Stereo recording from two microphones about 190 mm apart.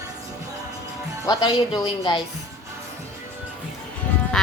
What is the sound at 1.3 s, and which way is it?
Speech, 20° left (ahead or behind).